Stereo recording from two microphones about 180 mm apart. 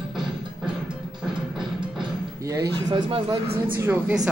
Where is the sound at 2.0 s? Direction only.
20° right (ahead or behind).